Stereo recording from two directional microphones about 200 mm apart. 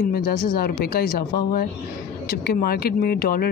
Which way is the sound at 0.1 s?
50° left (ahead or behind).